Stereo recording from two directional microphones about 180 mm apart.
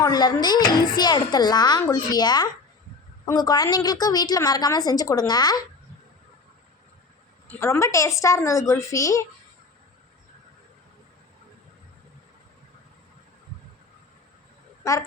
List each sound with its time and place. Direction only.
0.0 s a child's voice: 20° left (ahead or behind)
7.6 s a woman's voice: 15° left (ahead or behind)
14.8 s a woman's voice: 20° left (ahead or behind)